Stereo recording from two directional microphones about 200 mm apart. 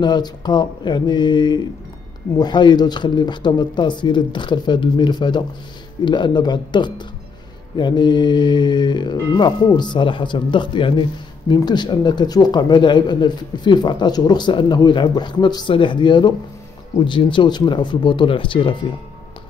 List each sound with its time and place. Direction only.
0.0 s mantra: 20° left (ahead or behind)